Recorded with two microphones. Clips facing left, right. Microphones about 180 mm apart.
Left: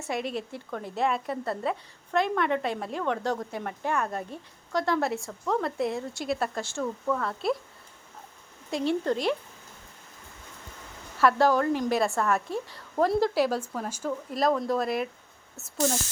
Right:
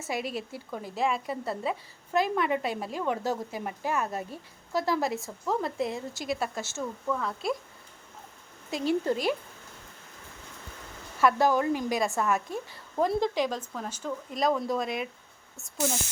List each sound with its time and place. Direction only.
0.0 s a woman's voice: centre (ahead or behind)
8.7 s a woman's voice: centre (ahead or behind)
11.3 s a woman's voice: 15° right (ahead or behind)
11.7 s a woman's voice: 5° right (ahead or behind)